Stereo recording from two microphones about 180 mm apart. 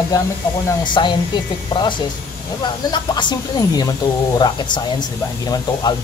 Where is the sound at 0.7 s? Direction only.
25° left (ahead or behind).